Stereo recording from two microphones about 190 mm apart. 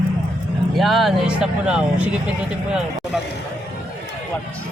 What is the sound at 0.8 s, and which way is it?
A man's voice, centre (ahead or behind).